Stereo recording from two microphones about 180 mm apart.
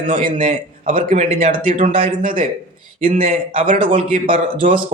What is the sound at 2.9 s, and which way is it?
Speech, 40° right (ahead or behind).